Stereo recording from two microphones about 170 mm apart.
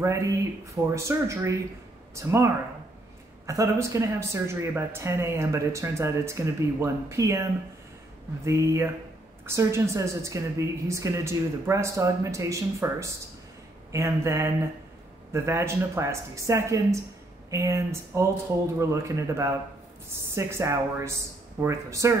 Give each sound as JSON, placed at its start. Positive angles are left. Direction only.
{"t": 0.0, "sound": "speech", "side_deg": -20}
{"t": 8.5, "sound": "speech", "side_deg": -15}